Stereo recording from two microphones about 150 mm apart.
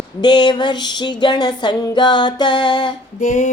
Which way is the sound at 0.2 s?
30° left (ahead or behind).